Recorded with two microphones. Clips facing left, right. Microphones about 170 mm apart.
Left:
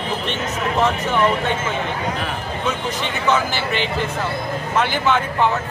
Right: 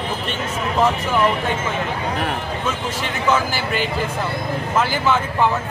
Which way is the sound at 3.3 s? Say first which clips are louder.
Even; 10° right (ahead or behind).